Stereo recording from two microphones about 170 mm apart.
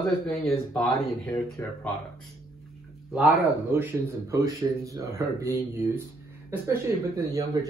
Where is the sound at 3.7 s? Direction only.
15° right (ahead or behind).